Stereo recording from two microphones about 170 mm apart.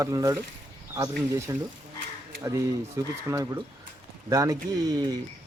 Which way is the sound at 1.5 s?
20° right (ahead or behind).